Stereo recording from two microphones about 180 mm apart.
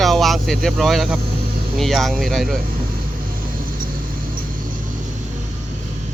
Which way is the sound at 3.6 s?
50° right (ahead or behind).